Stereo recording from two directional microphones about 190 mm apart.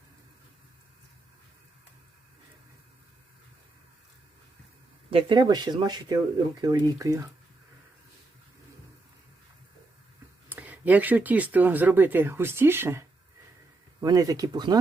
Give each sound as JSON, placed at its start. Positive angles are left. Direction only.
{"t": 5.1, "sound": "speech", "side_deg": -25}
{"t": 10.5, "sound": "speech", "side_deg": -10}